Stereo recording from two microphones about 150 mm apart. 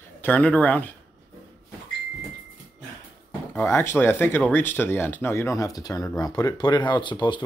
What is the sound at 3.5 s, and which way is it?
Speech, 15° left (ahead or behind).